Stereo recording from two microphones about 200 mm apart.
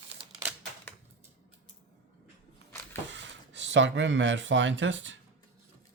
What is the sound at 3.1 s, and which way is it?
Speech, 65° right (ahead or behind).